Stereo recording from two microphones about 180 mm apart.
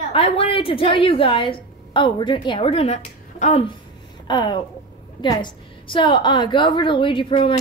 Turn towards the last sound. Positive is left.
turn(degrees=30)  # may be behind; listen again after turning